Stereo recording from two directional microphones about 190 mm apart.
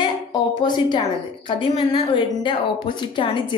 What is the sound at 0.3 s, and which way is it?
A woman's voice, 25° left (ahead or behind).